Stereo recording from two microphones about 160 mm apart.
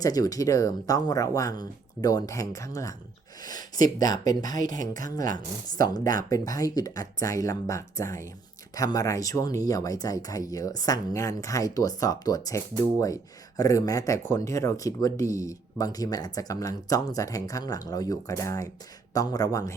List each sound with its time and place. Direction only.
0.0 s speech: 20° left (ahead or behind)
4.8 s speech: 55° right (ahead or behind)
5.1 s speech: 25° left (ahead or behind)